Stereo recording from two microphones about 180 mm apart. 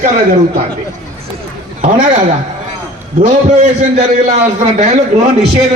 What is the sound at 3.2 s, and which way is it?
A man's voice, 40° right (ahead or behind).